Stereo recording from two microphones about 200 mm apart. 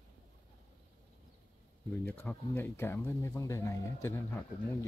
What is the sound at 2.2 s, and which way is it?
Speech, 10° left (ahead or behind).